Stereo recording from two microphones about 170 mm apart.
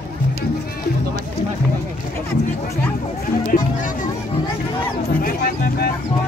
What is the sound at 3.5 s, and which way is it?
Music, 55° left (ahead or behind).